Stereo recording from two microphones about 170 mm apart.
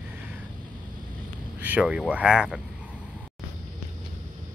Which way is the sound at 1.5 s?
10° right (ahead or behind).